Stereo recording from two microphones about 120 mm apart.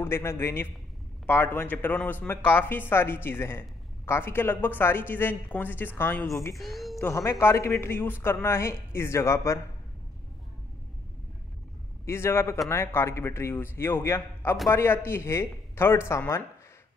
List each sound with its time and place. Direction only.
0.0 s a man's voice: 20° left (ahead or behind)
6.5 s a woman's voice: centre (ahead or behind)
7.0 s speech: 20° left (ahead or behind)
12.1 s speech: 20° left (ahead or behind)